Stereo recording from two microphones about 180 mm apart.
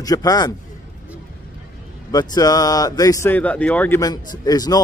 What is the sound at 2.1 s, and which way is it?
Speech, 20° left (ahead or behind).